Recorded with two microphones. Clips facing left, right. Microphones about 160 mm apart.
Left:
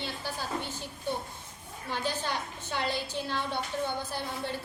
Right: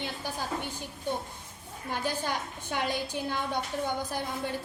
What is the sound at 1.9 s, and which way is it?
A woman's voice, 10° right (ahead or behind).